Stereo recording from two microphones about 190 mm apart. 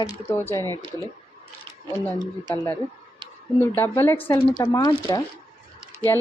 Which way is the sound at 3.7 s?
10° left (ahead or behind).